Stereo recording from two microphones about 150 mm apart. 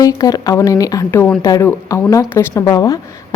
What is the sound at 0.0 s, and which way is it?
A woman's voice, 25° left (ahead or behind).